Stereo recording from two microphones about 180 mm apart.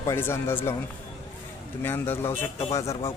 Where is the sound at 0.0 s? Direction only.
15° left (ahead or behind).